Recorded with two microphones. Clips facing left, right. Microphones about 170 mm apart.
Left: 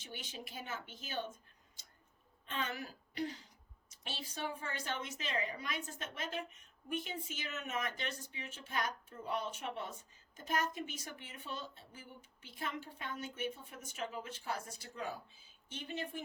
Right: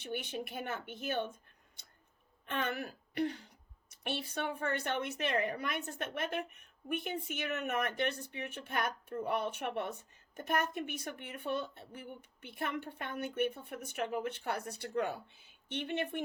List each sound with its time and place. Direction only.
0.0 s speech: 60° right (ahead or behind)